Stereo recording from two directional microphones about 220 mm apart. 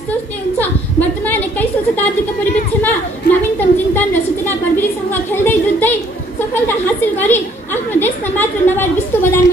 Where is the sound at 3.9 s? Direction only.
10° left (ahead or behind).